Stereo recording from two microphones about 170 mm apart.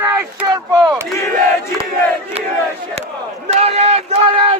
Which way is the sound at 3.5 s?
40° right (ahead or behind).